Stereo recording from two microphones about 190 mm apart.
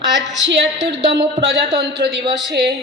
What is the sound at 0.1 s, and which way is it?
A woman's voice, 70° right (ahead or behind).